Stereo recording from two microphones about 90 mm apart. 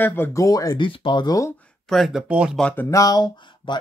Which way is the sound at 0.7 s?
65° left (ahead or behind).